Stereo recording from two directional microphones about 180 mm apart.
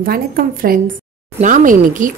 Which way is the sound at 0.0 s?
50° right (ahead or behind).